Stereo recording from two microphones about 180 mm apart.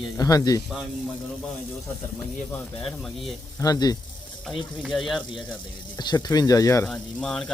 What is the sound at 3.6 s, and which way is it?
Speech, 20° left (ahead or behind).